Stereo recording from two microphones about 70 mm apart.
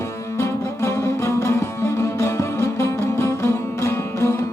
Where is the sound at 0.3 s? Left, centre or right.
Left.